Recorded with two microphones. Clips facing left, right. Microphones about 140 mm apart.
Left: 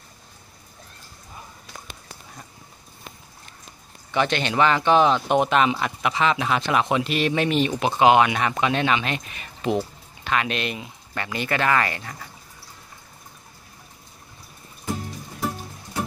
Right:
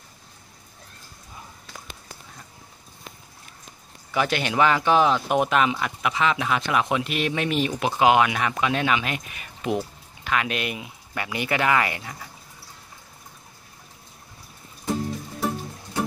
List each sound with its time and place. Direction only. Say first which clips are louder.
4.1 s speech: left 1 dB; 5° right (ahead or behind)
5.1 s speech: left 2 dB; 30° left (ahead or behind)
5.5 s speech: left 2 dB; centre (ahead or behind)